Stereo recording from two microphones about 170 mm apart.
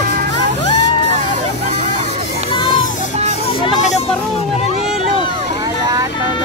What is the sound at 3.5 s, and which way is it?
Hubbub, 30° left (ahead or behind).